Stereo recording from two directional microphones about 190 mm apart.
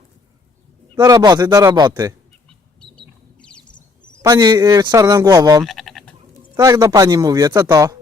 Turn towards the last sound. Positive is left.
turn(degrees=-20)  # may be behind; listen again after turning